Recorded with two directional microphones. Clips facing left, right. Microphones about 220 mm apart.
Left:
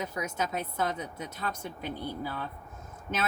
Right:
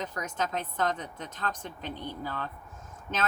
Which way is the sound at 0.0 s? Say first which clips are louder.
Left 1 dB; 10° left (ahead or behind).